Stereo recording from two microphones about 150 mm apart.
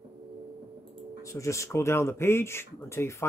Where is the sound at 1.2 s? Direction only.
20° left (ahead or behind).